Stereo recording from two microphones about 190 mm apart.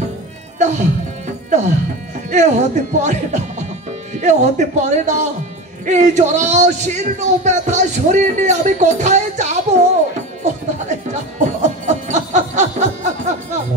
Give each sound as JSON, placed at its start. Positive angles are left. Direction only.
{"t": 0.6, "sound": "music", "side_deg": -40}
{"t": 2.3, "sound": "speech", "side_deg": -40}